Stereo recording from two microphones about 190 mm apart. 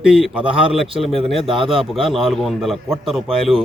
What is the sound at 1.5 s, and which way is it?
Speech, 30° right (ahead or behind).